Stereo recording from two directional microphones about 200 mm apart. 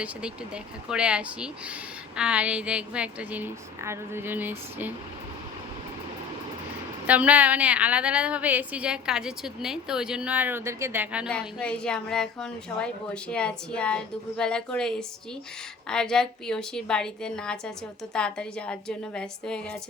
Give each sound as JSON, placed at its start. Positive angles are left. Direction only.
{"t": 0.0, "sound": "a woman's voice", "side_deg": -5}
{"t": 7.1, "sound": "a woman's voice", "side_deg": -5}
{"t": 11.3, "sound": "a woman's voice", "side_deg": 5}